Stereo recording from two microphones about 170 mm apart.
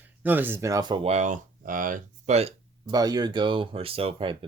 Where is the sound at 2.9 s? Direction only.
20° right (ahead or behind).